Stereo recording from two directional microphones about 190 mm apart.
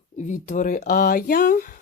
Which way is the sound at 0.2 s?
40° left (ahead or behind).